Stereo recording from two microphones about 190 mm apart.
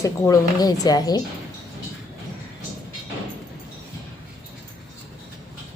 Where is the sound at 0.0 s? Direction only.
20° left (ahead or behind).